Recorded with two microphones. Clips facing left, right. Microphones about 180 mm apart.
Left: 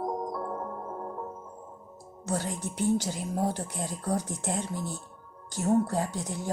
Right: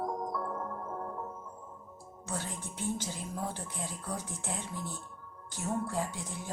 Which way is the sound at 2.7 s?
75° left (ahead or behind).